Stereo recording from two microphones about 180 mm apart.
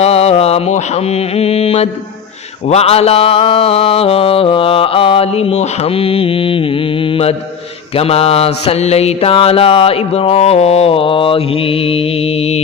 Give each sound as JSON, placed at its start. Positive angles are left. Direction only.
{"t": 0.0, "sound": "mantra", "side_deg": 35}